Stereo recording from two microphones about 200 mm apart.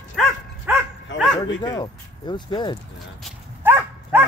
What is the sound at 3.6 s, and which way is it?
Dog, 10° right (ahead or behind).